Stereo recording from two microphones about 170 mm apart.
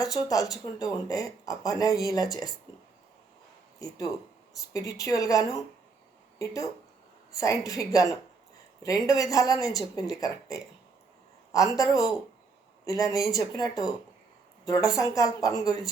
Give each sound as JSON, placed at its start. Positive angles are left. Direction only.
{"t": 0.0, "sound": "speech", "side_deg": 20}
{"t": 3.8, "sound": "speech", "side_deg": 20}